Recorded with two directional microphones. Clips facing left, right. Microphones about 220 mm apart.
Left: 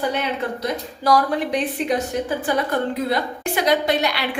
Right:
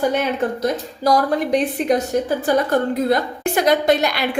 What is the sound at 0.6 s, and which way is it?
A woman's voice, 40° right (ahead or behind).